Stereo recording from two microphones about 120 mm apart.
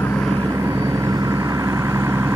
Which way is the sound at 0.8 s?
25° right (ahead or behind).